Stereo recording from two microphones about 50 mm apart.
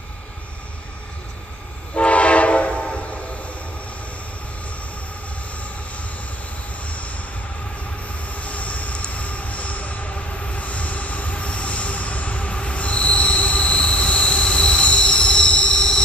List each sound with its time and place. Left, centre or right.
2.0 s train: left
6.9 s vehicle: left
8.3 s train: left; by 16.0 s centre